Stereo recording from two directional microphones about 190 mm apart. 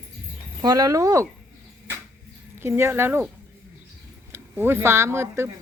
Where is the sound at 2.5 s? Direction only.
10° right (ahead or behind).